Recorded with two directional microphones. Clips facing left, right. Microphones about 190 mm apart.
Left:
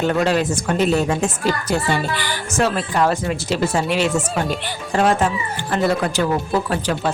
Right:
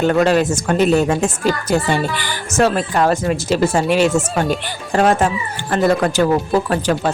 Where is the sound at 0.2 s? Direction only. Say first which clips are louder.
Right 4 dB; 50° right (ahead or behind).